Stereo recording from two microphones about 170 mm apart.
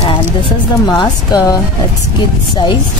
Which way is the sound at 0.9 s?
25° left (ahead or behind).